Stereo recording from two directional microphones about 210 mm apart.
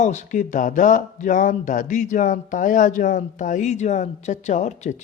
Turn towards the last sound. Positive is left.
turn(degrees=35)  # may be behind; listen again after turning